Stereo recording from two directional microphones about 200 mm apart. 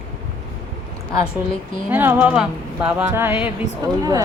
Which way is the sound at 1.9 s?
10° right (ahead or behind).